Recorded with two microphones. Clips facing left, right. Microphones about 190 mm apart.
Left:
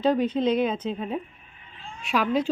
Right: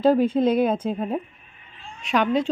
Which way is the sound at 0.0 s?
5° right (ahead or behind).